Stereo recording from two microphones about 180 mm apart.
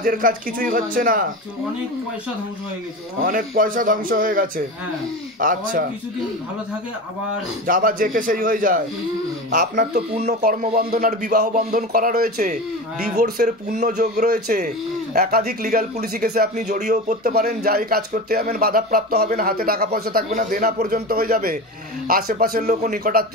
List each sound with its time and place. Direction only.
0.0 s a man's voice: 50° right (ahead or behind)
3.2 s a man's voice: 50° right (ahead or behind)
7.6 s a man's voice: 50° right (ahead or behind)
10.4 s speech: 55° right (ahead or behind)
13.1 s speech: 60° right (ahead or behind)
16.5 s speech: 40° right (ahead or behind)
16.9 s a man's voice: 55° right (ahead or behind)